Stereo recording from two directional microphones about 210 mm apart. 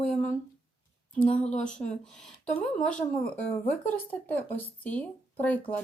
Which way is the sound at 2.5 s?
5° left (ahead or behind).